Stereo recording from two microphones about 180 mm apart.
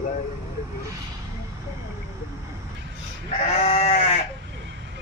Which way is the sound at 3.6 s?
40° left (ahead or behind).